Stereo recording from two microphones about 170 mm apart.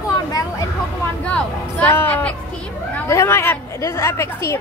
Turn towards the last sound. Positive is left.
turn(degrees=15)  # may be behind; listen again after turning